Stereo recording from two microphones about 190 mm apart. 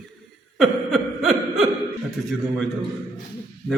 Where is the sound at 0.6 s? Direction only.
Centre (ahead or behind).